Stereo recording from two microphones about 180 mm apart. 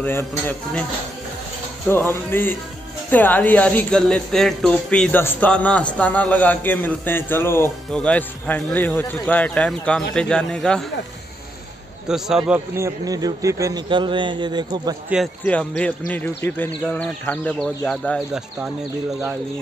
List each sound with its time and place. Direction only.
0.0 s a man's voice: 10° left (ahead or behind)
1.9 s a man's voice: 10° left (ahead or behind)
12.1 s a man's voice: 5° right (ahead or behind); by 15.0 s 25° right (ahead or behind)
15.4 s a man's voice: 10° left (ahead or behind)